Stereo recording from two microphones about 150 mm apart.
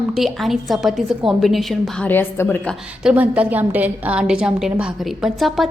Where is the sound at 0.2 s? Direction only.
Centre (ahead or behind).